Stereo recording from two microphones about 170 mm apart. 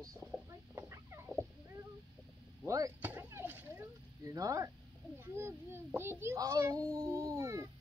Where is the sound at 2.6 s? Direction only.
20° right (ahead or behind).